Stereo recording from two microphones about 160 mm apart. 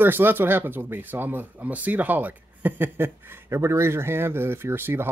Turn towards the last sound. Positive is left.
turn(degrees=-15)  # may be behind; listen again after turning